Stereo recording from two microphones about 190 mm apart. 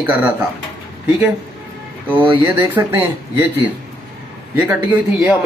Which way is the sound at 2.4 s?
10° right (ahead or behind).